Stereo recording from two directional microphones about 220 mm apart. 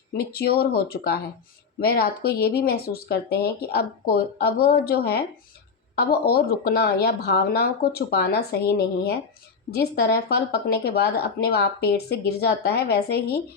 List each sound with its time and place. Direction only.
0.2 s speech: 45° left (ahead or behind)